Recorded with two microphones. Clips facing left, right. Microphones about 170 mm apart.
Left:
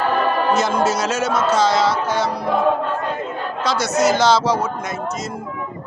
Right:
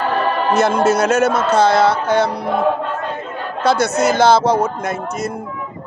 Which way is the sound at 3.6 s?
55° right (ahead or behind).